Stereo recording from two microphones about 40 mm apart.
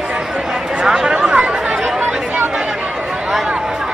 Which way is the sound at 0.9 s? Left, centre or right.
Centre.